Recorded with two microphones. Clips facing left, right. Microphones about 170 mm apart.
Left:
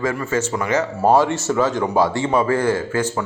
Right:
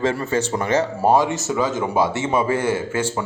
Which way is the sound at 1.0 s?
15° right (ahead or behind).